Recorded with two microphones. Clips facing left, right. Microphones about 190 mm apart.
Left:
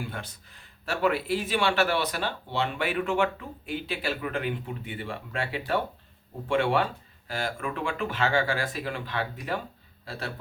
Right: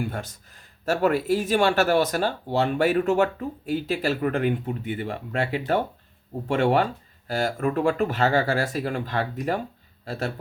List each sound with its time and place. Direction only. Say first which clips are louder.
0.0 s speech: right 6 dB; 45° right (ahead or behind)